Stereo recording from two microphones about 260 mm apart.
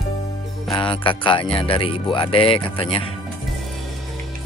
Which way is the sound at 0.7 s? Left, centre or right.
Centre.